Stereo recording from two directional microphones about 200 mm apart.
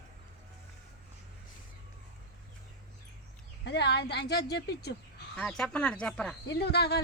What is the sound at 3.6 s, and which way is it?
Speech, 60° left (ahead or behind).